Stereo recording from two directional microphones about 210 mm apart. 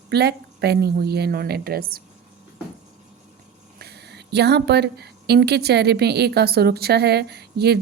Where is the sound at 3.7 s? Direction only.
50° right (ahead or behind).